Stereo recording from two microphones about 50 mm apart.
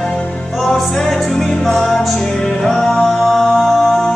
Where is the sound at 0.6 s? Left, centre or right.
Centre.